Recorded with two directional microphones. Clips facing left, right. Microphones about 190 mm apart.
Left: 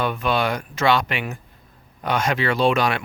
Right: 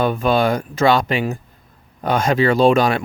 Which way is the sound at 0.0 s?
40° right (ahead or behind).